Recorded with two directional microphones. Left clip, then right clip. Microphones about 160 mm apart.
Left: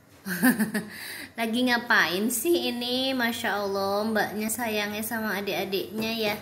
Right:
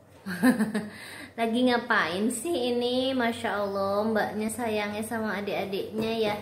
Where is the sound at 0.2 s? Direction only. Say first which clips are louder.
Left 1 dB; 25° left (ahead or behind).